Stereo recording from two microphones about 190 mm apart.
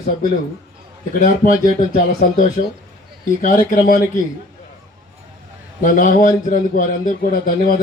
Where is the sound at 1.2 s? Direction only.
45° left (ahead or behind).